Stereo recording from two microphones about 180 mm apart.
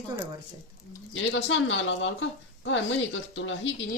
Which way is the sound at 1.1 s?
90° left.